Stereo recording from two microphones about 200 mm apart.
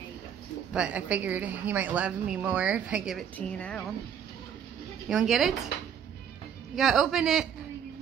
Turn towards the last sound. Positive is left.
turn(degrees=0)  # may be behind; listen again after turning